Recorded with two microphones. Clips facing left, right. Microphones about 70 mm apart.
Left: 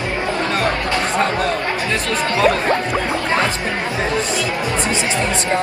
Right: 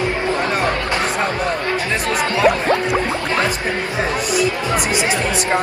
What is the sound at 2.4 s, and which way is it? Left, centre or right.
Music, right.